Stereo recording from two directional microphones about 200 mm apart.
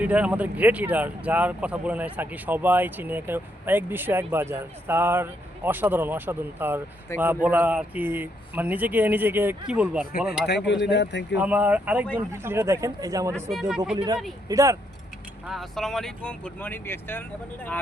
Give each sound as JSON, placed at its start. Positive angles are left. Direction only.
{"t": 0.0, "sound": "speech", "side_deg": -5}
{"t": 10.4, "sound": "speech", "side_deg": 60}
{"t": 11.3, "sound": "speech", "side_deg": -10}
{"t": 13.3, "sound": "speech", "side_deg": 0}
{"t": 13.9, "sound": "speech", "side_deg": -20}
{"t": 15.4, "sound": "speech", "side_deg": 0}